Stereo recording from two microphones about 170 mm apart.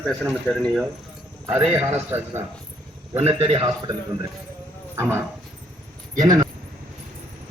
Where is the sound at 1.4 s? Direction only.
10° right (ahead or behind).